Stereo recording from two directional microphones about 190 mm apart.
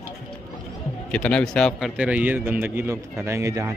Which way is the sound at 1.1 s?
5° left (ahead or behind).